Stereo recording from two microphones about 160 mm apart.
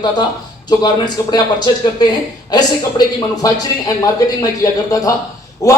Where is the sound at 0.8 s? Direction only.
25° left (ahead or behind).